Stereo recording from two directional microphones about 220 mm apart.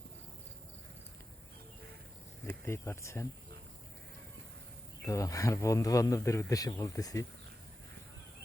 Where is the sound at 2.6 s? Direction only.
10° left (ahead or behind).